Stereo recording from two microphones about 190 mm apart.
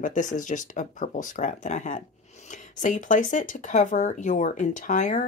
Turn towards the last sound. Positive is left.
turn(degrees=40)  # may be behind; listen again after turning